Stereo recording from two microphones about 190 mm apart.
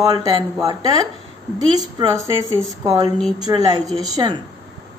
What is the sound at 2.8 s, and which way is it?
A woman's voice, 20° right (ahead or behind).